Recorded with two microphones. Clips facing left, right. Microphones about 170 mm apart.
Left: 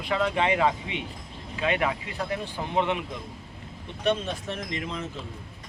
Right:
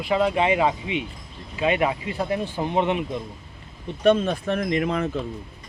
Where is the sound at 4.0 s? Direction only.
50° right (ahead or behind).